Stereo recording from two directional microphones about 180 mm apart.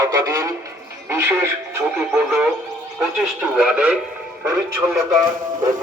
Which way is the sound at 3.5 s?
5° right (ahead or behind).